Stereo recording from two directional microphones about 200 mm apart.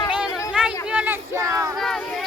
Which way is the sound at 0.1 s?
5° right (ahead or behind).